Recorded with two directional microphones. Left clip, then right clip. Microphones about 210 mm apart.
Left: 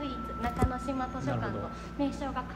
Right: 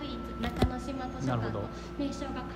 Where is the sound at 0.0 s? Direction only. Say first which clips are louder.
Left 3 dB; 20° left (ahead or behind).